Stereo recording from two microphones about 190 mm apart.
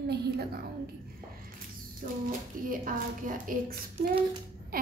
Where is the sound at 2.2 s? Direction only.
45° right (ahead or behind).